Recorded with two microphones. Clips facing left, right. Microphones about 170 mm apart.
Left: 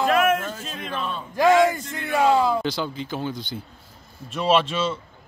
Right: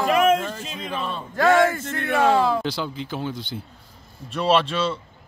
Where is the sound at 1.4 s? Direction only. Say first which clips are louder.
Left 1 dB; 20° left (ahead or behind).